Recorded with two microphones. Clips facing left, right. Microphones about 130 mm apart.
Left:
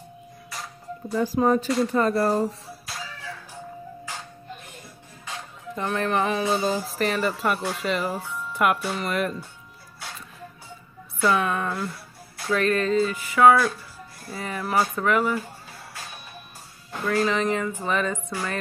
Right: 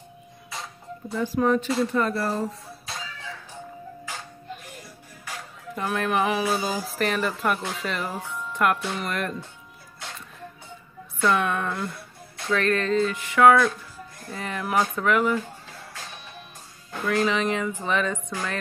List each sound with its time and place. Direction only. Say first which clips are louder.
0.5 s music: even; centre (ahead or behind)
1.1 s speech: left 1 dB; 35° left (ahead or behind)
5.8 s speech: even; 5° right (ahead or behind)
11.1 s speech: even; 5° left (ahead or behind)
17.1 s speech: even; centre (ahead or behind)